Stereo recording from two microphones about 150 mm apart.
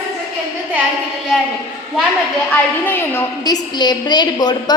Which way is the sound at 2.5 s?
15° left (ahead or behind).